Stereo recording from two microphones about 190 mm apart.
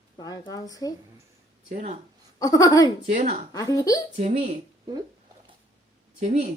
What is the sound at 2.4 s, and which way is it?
Speech, 20° left (ahead or behind).